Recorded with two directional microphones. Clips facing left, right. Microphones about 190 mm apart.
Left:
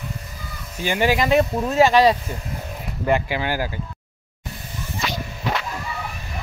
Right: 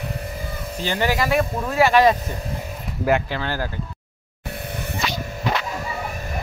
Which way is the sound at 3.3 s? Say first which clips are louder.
Left 2 dB; 10° left (ahead or behind).